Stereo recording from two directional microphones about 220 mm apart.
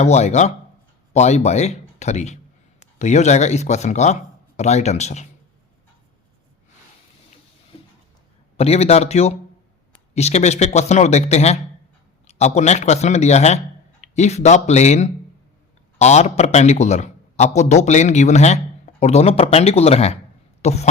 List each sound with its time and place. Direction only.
0.0 s a man's voice: 30° left (ahead or behind)
8.5 s a man's voice: 30° left (ahead or behind)